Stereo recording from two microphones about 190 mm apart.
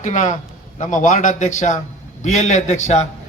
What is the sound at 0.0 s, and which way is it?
A man's voice, 40° left (ahead or behind).